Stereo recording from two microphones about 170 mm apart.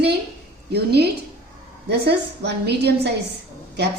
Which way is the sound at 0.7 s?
75° right (ahead or behind).